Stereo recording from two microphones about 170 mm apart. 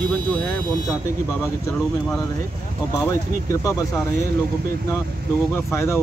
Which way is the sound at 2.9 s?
15° left (ahead or behind).